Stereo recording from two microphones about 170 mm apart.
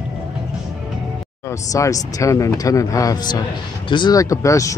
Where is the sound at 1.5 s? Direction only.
20° left (ahead or behind).